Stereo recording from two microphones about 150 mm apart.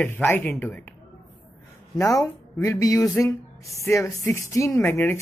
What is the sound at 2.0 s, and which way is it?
Speech, 20° left (ahead or behind).